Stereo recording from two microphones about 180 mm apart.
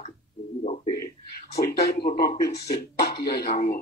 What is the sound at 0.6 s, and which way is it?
Speech, 35° left (ahead or behind).